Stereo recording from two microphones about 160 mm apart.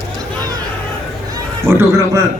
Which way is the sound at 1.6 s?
15° right (ahead or behind).